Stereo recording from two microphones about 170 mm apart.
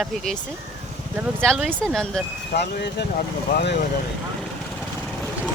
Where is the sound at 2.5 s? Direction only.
75° left (ahead or behind).